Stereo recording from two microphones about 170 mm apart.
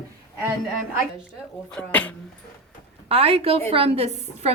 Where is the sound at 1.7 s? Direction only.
10° left (ahead or behind).